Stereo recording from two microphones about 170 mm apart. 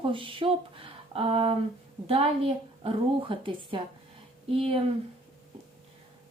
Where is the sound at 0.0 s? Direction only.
30° right (ahead or behind).